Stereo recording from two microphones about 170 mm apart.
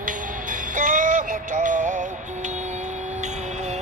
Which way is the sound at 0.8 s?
50° right (ahead or behind).